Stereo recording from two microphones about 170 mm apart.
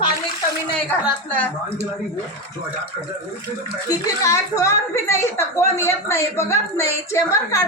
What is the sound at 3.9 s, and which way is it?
A woman's voice, 20° left (ahead or behind).